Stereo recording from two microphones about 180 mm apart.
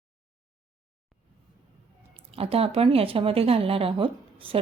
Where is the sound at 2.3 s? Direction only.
35° right (ahead or behind).